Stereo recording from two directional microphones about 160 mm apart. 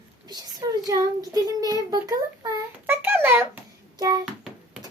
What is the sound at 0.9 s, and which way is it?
Child singing, 20° right (ahead or behind).